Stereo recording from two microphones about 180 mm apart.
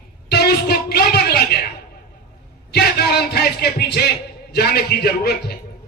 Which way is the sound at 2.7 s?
60° left (ahead or behind).